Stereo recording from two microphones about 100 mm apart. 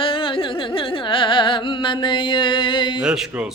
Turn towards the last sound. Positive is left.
turn(degrees=-5)  # may be behind; listen again after turning